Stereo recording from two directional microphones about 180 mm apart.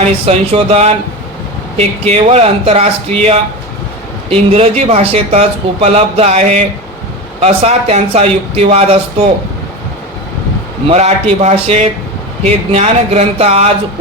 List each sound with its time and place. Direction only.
0.0 s a man's voice: 35° right (ahead or behind)
10.8 s a man's voice: 35° right (ahead or behind)